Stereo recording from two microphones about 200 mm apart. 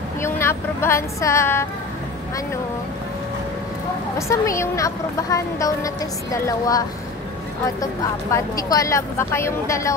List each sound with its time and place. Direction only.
0.2 s speech: 10° left (ahead or behind)
4.3 s speech: 15° left (ahead or behind)
7.8 s speech: 15° left (ahead or behind)